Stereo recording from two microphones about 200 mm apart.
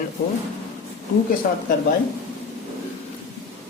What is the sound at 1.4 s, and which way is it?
Speech, 45° left (ahead or behind).